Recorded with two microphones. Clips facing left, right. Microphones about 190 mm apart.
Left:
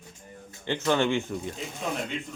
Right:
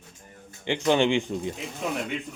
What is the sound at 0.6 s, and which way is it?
Speech, 15° right (ahead or behind).